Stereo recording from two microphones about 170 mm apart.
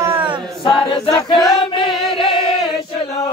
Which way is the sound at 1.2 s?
20° left (ahead or behind).